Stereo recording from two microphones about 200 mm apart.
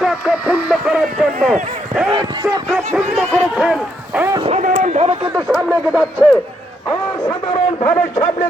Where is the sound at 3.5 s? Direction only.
5° right (ahead or behind).